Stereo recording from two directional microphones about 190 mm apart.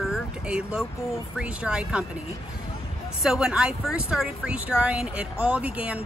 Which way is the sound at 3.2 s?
5° right (ahead or behind).